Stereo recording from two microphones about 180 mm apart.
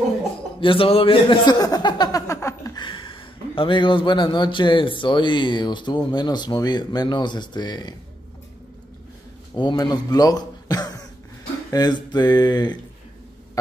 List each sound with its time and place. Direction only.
0.6 s speech: 30° left (ahead or behind)
9.6 s a man's voice: 25° left (ahead or behind)